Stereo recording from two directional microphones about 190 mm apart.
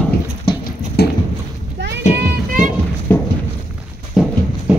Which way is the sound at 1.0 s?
55° left (ahead or behind).